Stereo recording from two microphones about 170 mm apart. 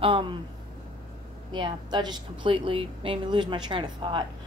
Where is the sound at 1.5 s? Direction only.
25° right (ahead or behind).